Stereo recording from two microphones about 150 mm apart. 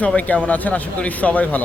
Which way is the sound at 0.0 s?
10° left (ahead or behind).